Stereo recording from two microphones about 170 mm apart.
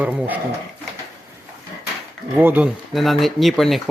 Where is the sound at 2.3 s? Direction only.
10° right (ahead or behind).